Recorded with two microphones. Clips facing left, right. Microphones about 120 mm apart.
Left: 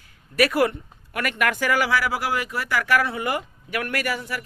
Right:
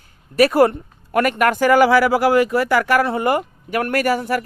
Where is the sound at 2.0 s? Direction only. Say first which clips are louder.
Right 11 dB; 50° right (ahead or behind).